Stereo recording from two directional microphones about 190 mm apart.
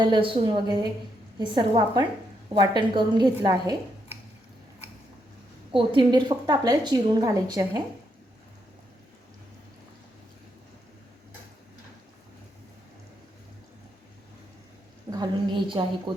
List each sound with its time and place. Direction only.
0.0 s a woman's voice: 25° right (ahead or behind)
5.7 s a woman's voice: 25° right (ahead or behind)
15.2 s a woman's voice: 25° right (ahead or behind)